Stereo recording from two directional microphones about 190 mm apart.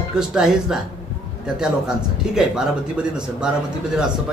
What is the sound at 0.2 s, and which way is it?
Speech, 5° right (ahead or behind).